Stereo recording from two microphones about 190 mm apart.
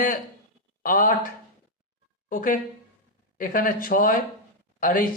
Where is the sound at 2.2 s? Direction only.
45° left (ahead or behind).